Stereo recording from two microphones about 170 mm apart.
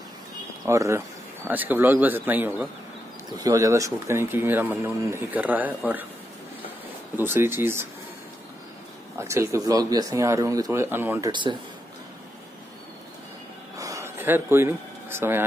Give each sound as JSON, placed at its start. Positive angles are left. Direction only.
{"t": 0.7, "sound": "speech", "side_deg": -15}
{"t": 3.3, "sound": "speech", "side_deg": -20}
{"t": 7.2, "sound": "speech", "side_deg": -15}
{"t": 9.3, "sound": "speech", "side_deg": -15}
{"t": 13.7, "sound": "a sound", "side_deg": -20}